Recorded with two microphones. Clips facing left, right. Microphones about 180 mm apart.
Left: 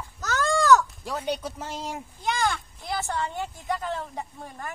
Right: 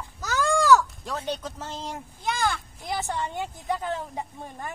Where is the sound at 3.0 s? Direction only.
15° right (ahead or behind).